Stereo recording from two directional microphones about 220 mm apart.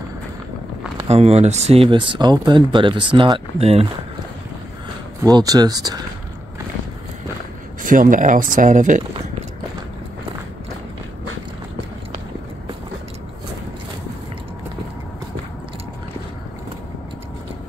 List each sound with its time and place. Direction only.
1.0 s speech: 30° right (ahead or behind)
5.2 s speech: 15° right (ahead or behind)
7.8 s speech: 35° right (ahead or behind)